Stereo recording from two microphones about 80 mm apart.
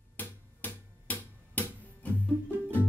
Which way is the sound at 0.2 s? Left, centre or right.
Left.